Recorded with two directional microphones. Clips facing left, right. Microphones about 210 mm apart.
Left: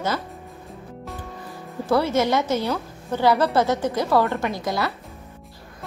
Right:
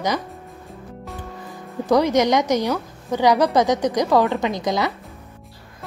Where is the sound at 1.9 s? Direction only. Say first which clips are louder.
Right 3 dB; 15° right (ahead or behind).